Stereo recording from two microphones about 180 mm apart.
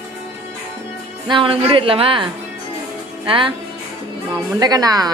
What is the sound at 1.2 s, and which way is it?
A woman's voice, 30° right (ahead or behind).